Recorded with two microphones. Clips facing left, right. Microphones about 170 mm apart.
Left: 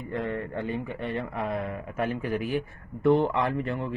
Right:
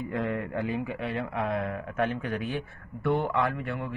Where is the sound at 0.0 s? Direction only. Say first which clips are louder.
Right 1 dB; centre (ahead or behind).